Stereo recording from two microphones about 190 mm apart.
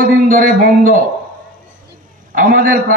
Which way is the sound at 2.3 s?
45° right (ahead or behind).